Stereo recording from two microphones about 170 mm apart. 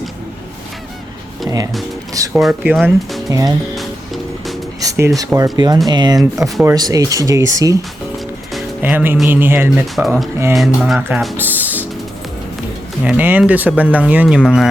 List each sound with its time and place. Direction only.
1.5 s speech: 20° right (ahead or behind)
2.3 s speech: 5° right (ahead or behind)
3.2 s speech: 20° right (ahead or behind)
3.8 s music: centre (ahead or behind)
4.8 s speech: 20° right (ahead or behind)
8.8 s speech: 10° right (ahead or behind)
9.8 s speech: centre (ahead or behind)
11.3 s music: 10° right (ahead or behind)
13.1 s speech: 10° right (ahead or behind)